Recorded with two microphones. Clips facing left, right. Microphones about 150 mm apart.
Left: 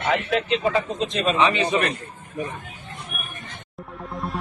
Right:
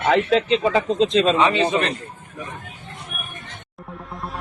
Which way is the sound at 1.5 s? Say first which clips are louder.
Right 2 dB; 30° right (ahead or behind).